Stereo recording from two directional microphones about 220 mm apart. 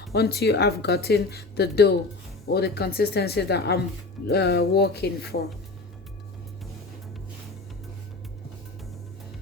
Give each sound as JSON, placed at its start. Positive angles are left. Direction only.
{"t": 0.1, "sound": "speech", "side_deg": 50}